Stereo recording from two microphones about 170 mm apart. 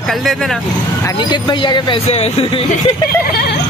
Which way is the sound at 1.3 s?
25° left (ahead or behind).